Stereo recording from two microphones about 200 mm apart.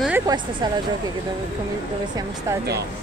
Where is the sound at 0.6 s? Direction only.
20° right (ahead or behind).